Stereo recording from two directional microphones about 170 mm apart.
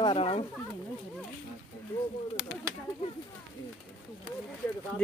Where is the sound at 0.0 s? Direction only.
35° left (ahead or behind).